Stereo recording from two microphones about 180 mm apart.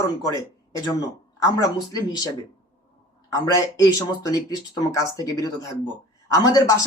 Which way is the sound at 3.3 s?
20° left (ahead or behind).